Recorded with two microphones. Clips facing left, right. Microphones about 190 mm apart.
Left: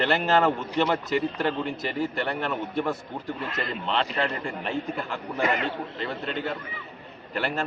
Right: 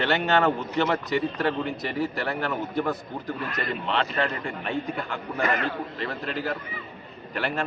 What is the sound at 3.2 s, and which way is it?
Speech, 25° left (ahead or behind).